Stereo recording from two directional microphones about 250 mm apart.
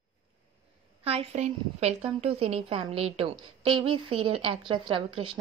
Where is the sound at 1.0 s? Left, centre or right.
Right.